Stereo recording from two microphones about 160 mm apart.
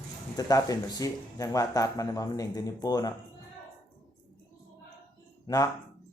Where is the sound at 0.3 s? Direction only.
20° left (ahead or behind).